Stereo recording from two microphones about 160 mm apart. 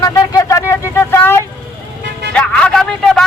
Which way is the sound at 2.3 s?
5° left (ahead or behind).